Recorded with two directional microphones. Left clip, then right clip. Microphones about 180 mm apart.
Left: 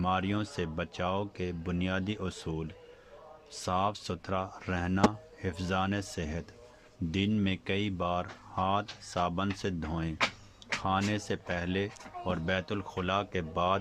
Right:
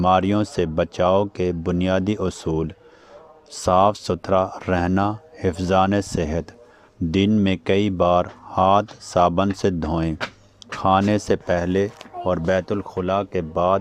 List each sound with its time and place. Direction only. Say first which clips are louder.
0.0 s a man's voice: right 13 dB; 40° right (ahead or behind); by 13.7 s 25° right (ahead or behind)